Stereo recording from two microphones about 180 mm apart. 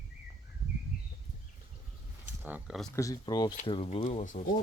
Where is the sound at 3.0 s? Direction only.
20° left (ahead or behind); by 4.4 s 40° left (ahead or behind).